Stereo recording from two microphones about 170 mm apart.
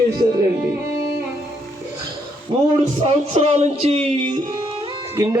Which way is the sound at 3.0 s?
35° right (ahead or behind).